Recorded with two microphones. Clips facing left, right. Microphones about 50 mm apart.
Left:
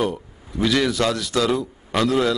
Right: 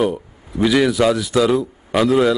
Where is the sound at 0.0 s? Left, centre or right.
Centre.